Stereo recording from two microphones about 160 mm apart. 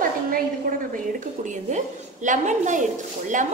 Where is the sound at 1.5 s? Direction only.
50° right (ahead or behind).